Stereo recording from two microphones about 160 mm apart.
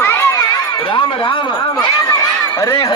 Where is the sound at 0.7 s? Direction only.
30° left (ahead or behind).